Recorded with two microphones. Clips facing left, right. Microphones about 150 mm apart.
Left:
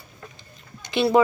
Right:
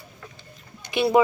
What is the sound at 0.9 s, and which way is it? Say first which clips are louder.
Speech: left 1 dB; 20° right (ahead or behind).